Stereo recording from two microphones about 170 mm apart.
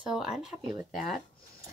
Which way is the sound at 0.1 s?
5° right (ahead or behind).